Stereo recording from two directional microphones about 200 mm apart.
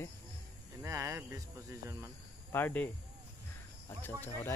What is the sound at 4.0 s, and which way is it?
Speech, 10° left (ahead or behind).